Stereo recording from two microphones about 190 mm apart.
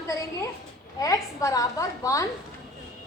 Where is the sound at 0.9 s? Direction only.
20° left (ahead or behind).